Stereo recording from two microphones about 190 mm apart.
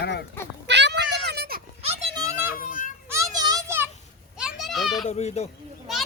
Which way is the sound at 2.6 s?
45° left (ahead or behind).